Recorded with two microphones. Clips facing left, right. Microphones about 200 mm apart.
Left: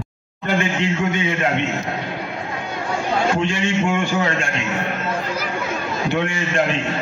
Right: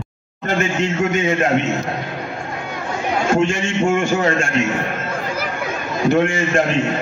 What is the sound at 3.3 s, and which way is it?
Speech, 45° right (ahead or behind).